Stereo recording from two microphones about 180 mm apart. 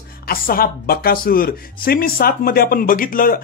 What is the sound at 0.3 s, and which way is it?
Speech, 55° left (ahead or behind).